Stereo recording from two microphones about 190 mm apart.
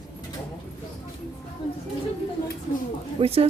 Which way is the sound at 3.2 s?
30° right (ahead or behind).